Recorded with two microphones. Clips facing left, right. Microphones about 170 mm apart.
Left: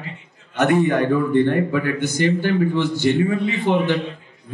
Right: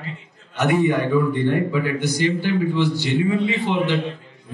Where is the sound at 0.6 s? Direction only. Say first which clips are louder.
Left 2 dB; 50° left (ahead or behind).